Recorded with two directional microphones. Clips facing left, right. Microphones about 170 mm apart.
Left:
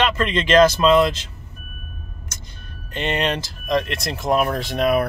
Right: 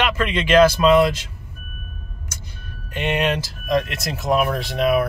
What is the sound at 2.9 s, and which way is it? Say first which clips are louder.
Speech: right 1 dB; 10° right (ahead or behind).